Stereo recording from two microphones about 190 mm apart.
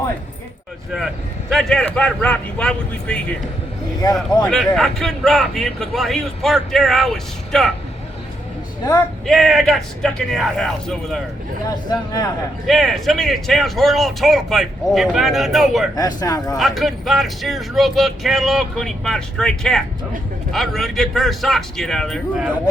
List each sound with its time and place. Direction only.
0.9 s speech: centre (ahead or behind)
4.4 s speech: centre (ahead or behind)
9.2 s speech: centre (ahead or behind)
11.9 s speech: 20° left (ahead or behind)
12.6 s speech: centre (ahead or behind)
16.0 s speech: 20° left (ahead or behind)
16.6 s speech: centre (ahead or behind)